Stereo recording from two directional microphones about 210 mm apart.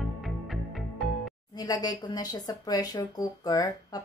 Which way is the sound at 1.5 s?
20° left (ahead or behind).